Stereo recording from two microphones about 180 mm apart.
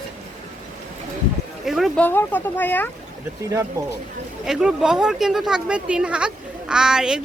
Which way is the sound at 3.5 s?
15° right (ahead or behind).